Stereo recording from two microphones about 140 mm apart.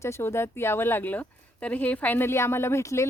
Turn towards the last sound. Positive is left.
turn(degrees=20)  # may be behind; listen again after turning